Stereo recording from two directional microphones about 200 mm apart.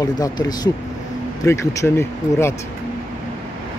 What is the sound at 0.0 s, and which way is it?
Speech, 20° left (ahead or behind).